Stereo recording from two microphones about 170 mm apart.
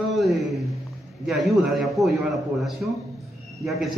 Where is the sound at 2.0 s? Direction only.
20° right (ahead or behind).